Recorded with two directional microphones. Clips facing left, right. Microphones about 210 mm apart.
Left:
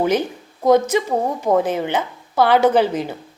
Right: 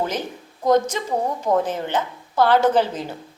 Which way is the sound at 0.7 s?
10° left (ahead or behind).